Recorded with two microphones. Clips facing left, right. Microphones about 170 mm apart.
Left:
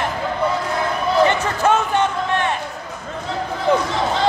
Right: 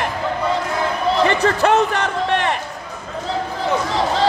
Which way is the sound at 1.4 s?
75° right (ahead or behind).